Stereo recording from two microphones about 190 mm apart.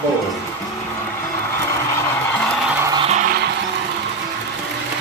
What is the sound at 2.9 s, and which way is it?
Music, 35° right (ahead or behind).